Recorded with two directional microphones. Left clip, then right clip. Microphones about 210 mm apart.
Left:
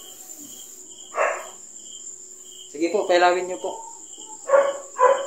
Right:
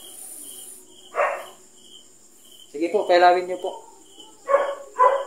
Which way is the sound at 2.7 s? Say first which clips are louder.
Right 1 dB; 20° right (ahead or behind).